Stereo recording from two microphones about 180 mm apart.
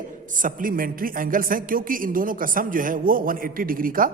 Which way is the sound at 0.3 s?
45° right (ahead or behind).